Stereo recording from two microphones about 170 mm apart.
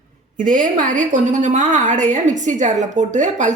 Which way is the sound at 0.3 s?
50° right (ahead or behind).